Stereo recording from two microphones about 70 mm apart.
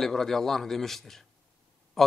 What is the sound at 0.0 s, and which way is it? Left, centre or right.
A man's voice, centre.